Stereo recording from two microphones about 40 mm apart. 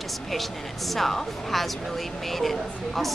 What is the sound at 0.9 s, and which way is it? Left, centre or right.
Speech, centre.